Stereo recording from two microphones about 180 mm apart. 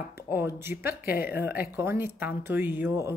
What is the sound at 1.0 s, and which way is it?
Speech, 60° left (ahead or behind).